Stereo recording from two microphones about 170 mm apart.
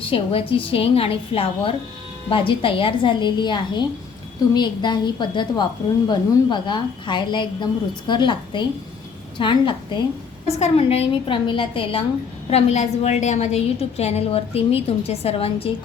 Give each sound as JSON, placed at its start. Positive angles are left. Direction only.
{"t": 0.1, "sound": "a woman's voice", "side_deg": 30}